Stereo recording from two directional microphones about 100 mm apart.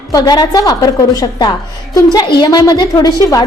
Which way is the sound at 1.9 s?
45° left (ahead or behind).